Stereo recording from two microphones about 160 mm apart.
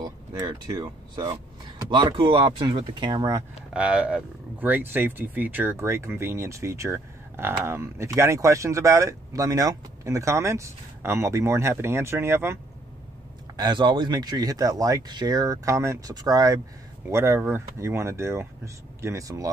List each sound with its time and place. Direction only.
0.0 s speech: 25° right (ahead or behind)
3.7 s speech: 5° right (ahead or behind)
13.6 s speech: 30° right (ahead or behind)